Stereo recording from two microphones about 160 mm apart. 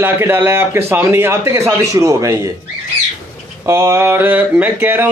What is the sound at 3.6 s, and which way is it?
A man's voice, 15° right (ahead or behind).